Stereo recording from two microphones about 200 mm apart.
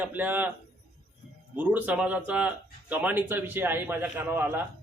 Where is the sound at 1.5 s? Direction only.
5° right (ahead or behind).